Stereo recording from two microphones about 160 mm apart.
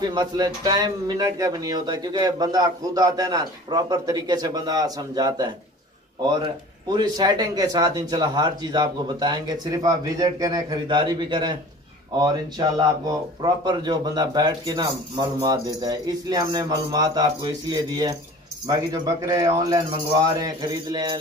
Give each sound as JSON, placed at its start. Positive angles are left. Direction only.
{"t": 0.0, "sound": "speech", "side_deg": -25}